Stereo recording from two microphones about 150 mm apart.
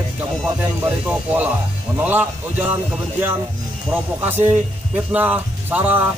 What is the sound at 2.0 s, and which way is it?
Speech, 15° right (ahead or behind).